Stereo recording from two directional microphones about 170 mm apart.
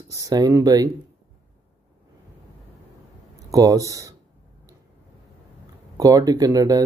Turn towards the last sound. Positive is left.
turn(degrees=-20)  # may be behind; listen again after turning